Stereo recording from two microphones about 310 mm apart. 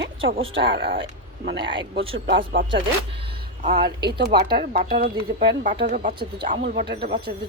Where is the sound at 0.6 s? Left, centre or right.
Right.